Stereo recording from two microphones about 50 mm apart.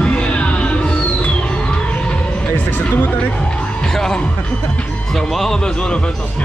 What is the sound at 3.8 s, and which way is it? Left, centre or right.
Music, centre.